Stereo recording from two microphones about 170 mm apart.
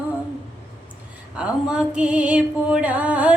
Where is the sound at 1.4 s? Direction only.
5° right (ahead or behind).